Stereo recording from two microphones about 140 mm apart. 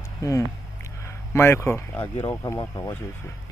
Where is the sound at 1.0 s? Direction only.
15° left (ahead or behind).